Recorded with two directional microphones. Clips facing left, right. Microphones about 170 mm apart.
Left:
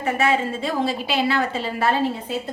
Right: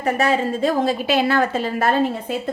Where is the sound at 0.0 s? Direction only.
40° right (ahead or behind).